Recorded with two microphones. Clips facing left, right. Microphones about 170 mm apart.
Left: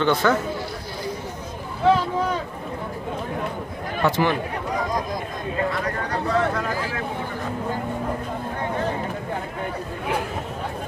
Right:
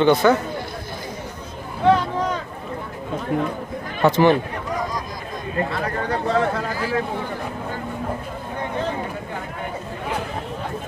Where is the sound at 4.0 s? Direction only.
20° right (ahead or behind).